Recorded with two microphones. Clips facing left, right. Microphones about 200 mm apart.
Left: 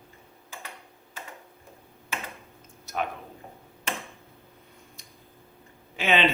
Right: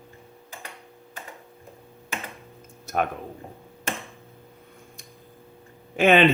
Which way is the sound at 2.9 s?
50° right (ahead or behind).